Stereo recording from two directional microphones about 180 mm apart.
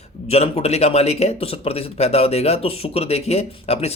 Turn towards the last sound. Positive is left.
turn(degrees=35)  # may be behind; listen again after turning